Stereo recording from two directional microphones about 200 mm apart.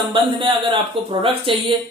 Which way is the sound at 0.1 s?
25° right (ahead or behind).